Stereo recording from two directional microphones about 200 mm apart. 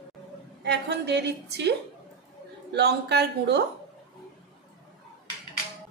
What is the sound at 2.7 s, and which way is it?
Speech, 55° right (ahead or behind).